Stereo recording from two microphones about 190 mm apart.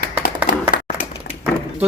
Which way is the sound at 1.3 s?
55° left (ahead or behind).